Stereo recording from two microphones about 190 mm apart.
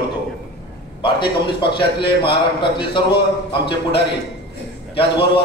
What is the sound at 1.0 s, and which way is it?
A man's voice, 25° left (ahead or behind).